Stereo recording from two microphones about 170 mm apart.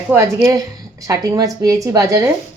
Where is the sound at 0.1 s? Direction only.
15° right (ahead or behind).